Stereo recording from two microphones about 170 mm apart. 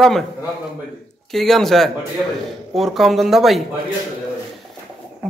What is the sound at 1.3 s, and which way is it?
A man's voice, centre (ahead or behind).